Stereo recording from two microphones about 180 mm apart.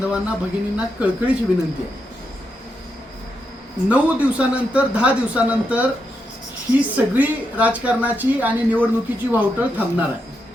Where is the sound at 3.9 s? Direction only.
5° right (ahead or behind).